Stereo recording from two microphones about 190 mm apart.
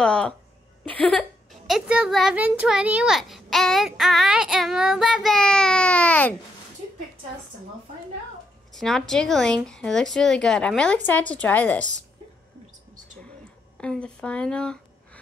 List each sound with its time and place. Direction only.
0.0 s a sound: 5° left (ahead or behind)
0.8 s a woman's voice: 5° left (ahead or behind)
1.7 s a child's voice: 5° right (ahead or behind)
8.7 s a child's voice: centre (ahead or behind)
12.9 s a sound: 40° right (ahead or behind)
13.7 s a child's voice: 5° left (ahead or behind)